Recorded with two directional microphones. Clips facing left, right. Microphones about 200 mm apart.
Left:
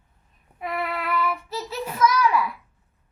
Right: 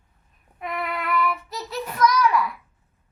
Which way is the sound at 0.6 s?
5° left (ahead or behind).